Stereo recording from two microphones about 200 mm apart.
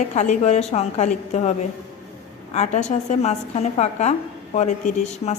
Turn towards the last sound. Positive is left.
turn(degrees=35)  # may be behind; listen again after turning